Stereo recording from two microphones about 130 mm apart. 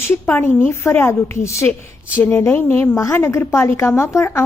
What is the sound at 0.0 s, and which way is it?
A woman's voice, 15° left (ahead or behind).